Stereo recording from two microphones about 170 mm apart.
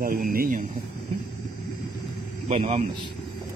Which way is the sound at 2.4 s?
40° right (ahead or behind).